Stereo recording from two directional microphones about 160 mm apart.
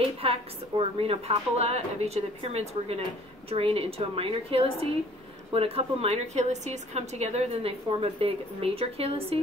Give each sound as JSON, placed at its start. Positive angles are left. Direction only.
{"t": 0.2, "sound": "a woman's voice", "side_deg": -35}